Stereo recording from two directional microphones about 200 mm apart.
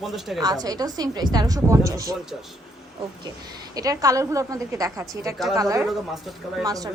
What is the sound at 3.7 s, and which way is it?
A woman's voice, 20° right (ahead or behind).